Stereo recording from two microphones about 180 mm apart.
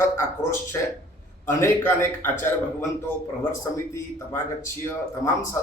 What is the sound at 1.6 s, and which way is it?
Speech, 15° left (ahead or behind).